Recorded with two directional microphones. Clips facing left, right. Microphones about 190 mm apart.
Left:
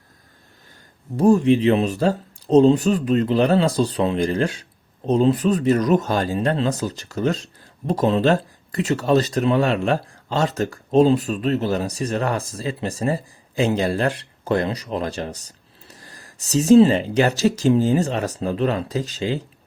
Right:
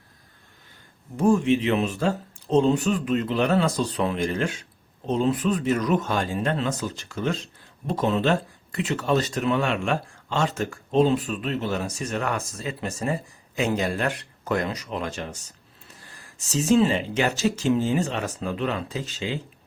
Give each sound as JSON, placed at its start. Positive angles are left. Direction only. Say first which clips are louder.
{"t": 1.1, "sound": "speech", "louder": "left 5 dB", "side_deg": 35}